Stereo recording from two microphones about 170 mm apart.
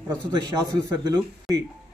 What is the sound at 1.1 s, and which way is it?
Speech, 20° right (ahead or behind).